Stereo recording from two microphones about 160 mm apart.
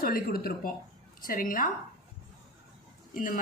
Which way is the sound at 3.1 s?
60° left (ahead or behind).